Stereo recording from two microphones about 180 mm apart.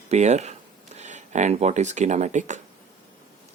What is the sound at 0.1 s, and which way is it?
Speech, 40° right (ahead or behind).